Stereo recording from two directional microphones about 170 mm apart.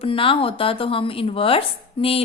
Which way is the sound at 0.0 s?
30° left (ahead or behind).